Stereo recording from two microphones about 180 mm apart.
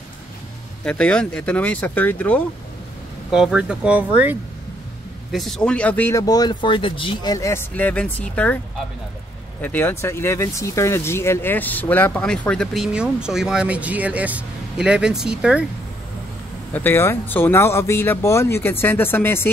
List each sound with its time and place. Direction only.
0.8 s speech: 5° left (ahead or behind)
3.3 s speech: 5° right (ahead or behind); by 7.3 s 30° left (ahead or behind)
7.3 s speech: 15° left (ahead or behind); by 15.6 s 5° right (ahead or behind)
16.7 s speech: 10° left (ahead or behind)